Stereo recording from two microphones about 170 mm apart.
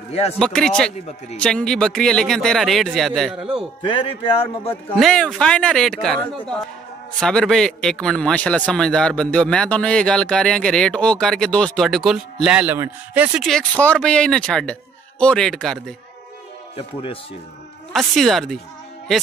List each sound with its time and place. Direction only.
0.1 s speech: 40° left (ahead or behind)
0.4 s a man's voice: 5° left (ahead or behind)
3.8 s speech: 30° left (ahead or behind)
4.9 s a man's voice: centre (ahead or behind)
16.7 s speech: 30° left (ahead or behind)
17.9 s a man's voice: centre (ahead or behind)